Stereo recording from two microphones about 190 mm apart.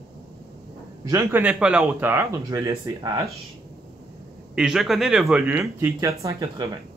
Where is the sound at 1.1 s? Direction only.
10° right (ahead or behind).